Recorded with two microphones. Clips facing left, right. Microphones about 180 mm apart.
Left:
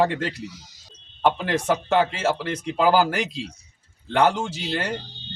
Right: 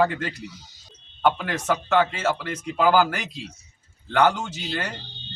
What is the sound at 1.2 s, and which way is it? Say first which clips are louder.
Speech: left 1 dB; 30° left (ahead or behind).